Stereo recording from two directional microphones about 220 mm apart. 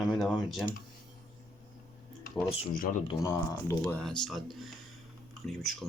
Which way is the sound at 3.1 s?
15° left (ahead or behind).